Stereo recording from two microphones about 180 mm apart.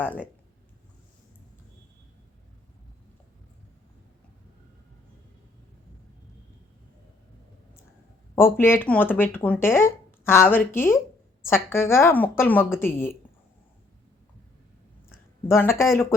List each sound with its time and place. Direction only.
0.0 s speech: 10° left (ahead or behind)
8.4 s speech: 15° left (ahead or behind)
15.4 s speech: 15° left (ahead or behind)